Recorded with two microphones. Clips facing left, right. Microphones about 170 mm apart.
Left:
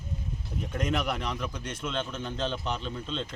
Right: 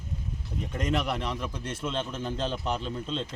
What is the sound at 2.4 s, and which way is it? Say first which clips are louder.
Speech: right 1 dB; 5° right (ahead or behind).